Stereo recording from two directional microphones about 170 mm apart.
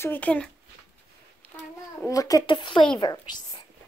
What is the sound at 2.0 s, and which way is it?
Speech, 20° left (ahead or behind).